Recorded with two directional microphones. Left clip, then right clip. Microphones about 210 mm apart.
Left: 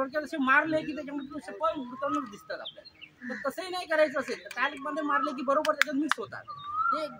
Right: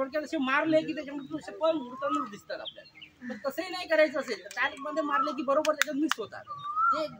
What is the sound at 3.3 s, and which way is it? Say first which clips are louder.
Speech: left 1 dB; centre (ahead or behind).